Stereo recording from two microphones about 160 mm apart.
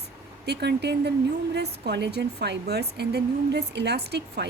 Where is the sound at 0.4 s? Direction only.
90° right.